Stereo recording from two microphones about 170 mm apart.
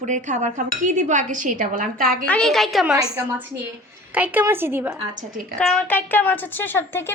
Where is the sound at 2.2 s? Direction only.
5° left (ahead or behind).